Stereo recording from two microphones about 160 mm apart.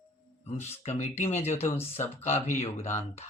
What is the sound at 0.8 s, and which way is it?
Speech, 45° left (ahead or behind).